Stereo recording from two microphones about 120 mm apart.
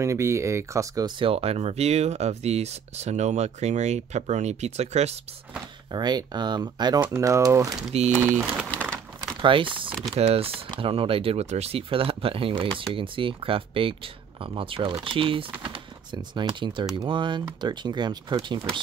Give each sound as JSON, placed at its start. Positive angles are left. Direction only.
{"t": 0.0, "sound": "speech", "side_deg": -25}
{"t": 1.0, "sound": "speech", "side_deg": -50}
{"t": 5.9, "sound": "speech", "side_deg": -35}
{"t": 7.1, "sound": "speech", "side_deg": -25}
{"t": 8.1, "sound": "speech", "side_deg": -15}
{"t": 9.4, "sound": "speech", "side_deg": -45}
{"t": 10.1, "sound": "speech", "side_deg": -55}